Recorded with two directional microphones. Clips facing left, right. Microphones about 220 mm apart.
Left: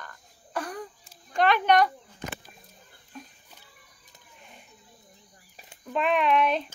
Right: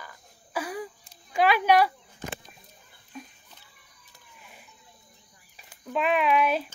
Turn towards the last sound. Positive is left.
turn(degrees=-5)  # may be behind; listen again after turning